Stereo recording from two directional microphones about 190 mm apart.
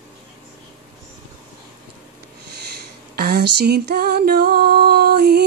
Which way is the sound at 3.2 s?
55° right (ahead or behind).